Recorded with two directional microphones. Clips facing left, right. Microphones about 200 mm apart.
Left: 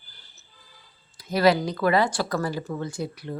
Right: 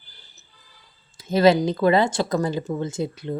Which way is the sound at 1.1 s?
25° right (ahead or behind).